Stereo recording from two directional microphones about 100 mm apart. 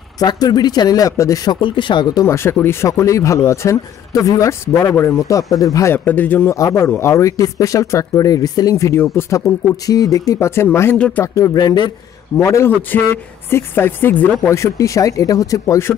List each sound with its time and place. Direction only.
0.2 s speech: 45° left (ahead or behind)
1.6 s speech: 50° left (ahead or behind)
2.2 s speech: 25° left (ahead or behind)
5.9 s speech: 20° left (ahead or behind)
6.5 s speech: 30° left (ahead or behind)
9.8 s speech: 35° left (ahead or behind)
11.0 s speech: 10° left (ahead or behind)
11.3 s speech: 35° left (ahead or behind)
12.4 s speech: 30° left (ahead or behind)
14.5 s speech: 30° left (ahead or behind)
15.6 s speech: 25° left (ahead or behind)